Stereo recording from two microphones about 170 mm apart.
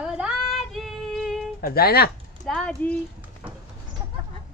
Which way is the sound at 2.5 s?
5° left (ahead or behind).